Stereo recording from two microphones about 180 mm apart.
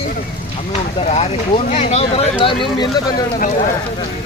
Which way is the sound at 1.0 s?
35° left (ahead or behind).